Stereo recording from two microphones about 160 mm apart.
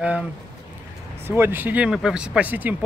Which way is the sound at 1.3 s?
15° right (ahead or behind).